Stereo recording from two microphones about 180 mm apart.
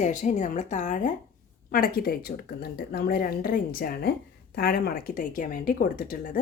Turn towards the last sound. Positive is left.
turn(degrees=55)  # may be behind; listen again after turning